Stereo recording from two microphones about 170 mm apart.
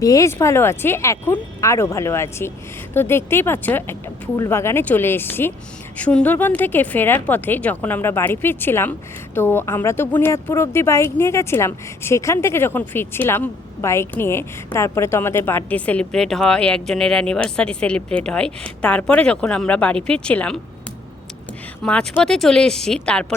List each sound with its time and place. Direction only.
0.0 s speech: 20° left (ahead or behind)
21.8 s speech: 5° left (ahead or behind)